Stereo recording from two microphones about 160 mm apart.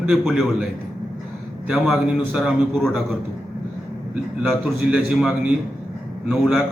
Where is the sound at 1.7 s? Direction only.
5° right (ahead or behind).